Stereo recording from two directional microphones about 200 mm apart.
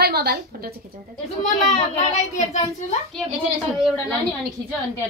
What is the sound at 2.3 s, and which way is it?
Speech, 35° left (ahead or behind).